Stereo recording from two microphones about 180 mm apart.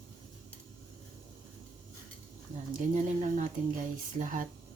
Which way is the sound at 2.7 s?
45° right (ahead or behind).